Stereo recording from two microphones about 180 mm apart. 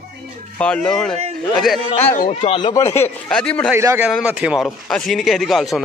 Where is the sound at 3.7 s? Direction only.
15° right (ahead or behind).